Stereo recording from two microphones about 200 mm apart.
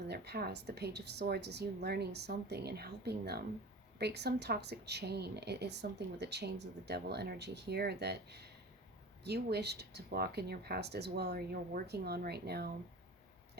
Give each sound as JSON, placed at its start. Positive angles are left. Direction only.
{"t": 0.1, "sound": "a woman's voice", "side_deg": -55}